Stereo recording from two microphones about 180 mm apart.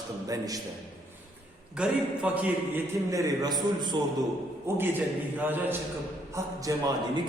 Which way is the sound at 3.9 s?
25° right (ahead or behind).